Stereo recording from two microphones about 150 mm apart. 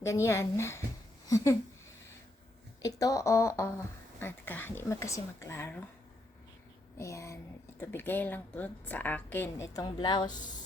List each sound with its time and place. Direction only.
0.0 s a woman's voice: 20° left (ahead or behind)
2.8 s a woman's voice: 25° left (ahead or behind)
6.9 s a woman's voice: 20° left (ahead or behind)
9.8 s speech: 30° left (ahead or behind)